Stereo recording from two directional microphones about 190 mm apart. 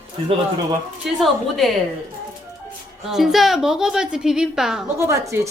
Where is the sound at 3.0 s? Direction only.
Centre (ahead or behind).